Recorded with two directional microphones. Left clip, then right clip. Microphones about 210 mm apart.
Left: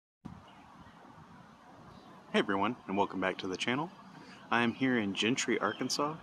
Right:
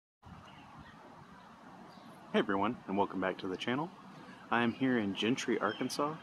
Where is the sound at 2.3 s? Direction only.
5° left (ahead or behind).